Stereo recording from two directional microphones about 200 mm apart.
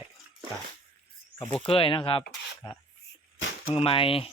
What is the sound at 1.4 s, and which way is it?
Speech, 25° left (ahead or behind).